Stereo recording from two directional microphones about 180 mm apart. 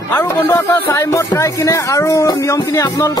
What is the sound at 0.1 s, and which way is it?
Speech, 10° left (ahead or behind).